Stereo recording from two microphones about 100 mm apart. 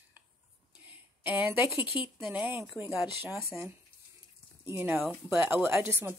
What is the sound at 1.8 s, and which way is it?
Speech, 55° left (ahead or behind).